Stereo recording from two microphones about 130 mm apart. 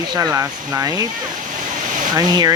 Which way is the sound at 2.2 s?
30° right (ahead or behind).